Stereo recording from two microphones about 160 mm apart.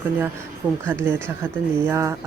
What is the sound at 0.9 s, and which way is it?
Speech, 15° right (ahead or behind).